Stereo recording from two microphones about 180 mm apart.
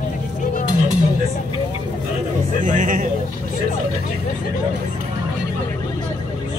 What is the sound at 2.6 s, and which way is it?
Music, 45° right (ahead or behind).